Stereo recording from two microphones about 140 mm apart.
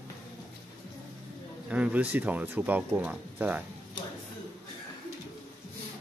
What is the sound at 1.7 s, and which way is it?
Speech, 10° right (ahead or behind).